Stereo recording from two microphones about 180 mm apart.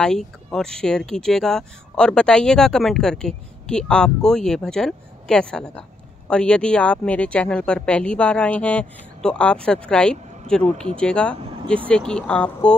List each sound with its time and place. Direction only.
0.0 s speech: 5° left (ahead or behind)
11.3 s speech: 30° right (ahead or behind)
11.9 s speech: 5° left (ahead or behind)